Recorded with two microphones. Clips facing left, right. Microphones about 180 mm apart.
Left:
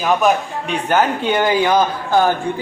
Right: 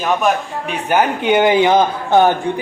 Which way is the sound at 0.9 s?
15° right (ahead or behind).